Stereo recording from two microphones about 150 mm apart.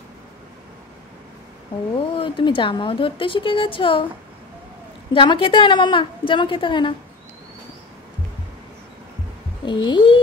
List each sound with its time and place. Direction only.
2.1 s a woman's voice: 35° left (ahead or behind)
5.1 s a woman's voice: 35° left (ahead or behind)
9.7 s a woman's voice: 30° left (ahead or behind)